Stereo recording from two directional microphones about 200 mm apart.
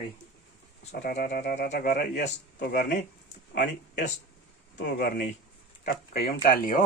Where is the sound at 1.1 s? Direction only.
50° left (ahead or behind).